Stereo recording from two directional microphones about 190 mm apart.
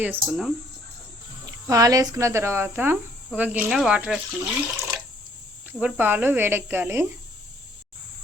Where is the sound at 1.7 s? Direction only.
20° right (ahead or behind).